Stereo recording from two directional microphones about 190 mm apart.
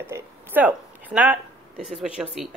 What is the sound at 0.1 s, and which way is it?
A woman's voice, 10° right (ahead or behind).